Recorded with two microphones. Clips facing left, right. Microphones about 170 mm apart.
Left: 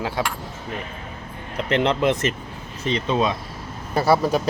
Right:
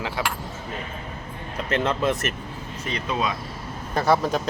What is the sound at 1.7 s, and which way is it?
Speech, 15° left (ahead or behind).